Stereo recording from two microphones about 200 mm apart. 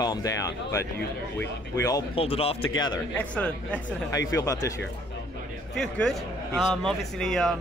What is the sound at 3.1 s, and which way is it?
Speech, 5° left (ahead or behind).